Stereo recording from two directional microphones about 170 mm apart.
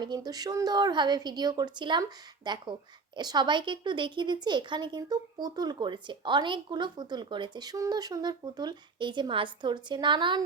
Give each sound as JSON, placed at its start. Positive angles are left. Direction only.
{"t": 0.0, "sound": "a woman's voice", "side_deg": -25}